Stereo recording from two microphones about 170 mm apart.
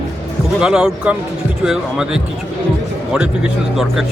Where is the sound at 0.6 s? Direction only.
5° right (ahead or behind).